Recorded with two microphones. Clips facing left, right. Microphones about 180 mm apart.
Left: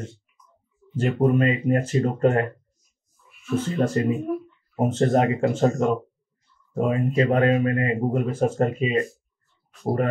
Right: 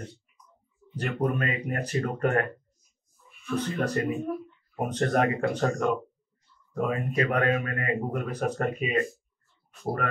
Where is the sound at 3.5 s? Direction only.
25° left (ahead or behind).